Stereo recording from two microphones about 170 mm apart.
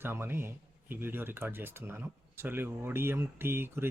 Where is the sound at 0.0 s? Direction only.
15° right (ahead or behind).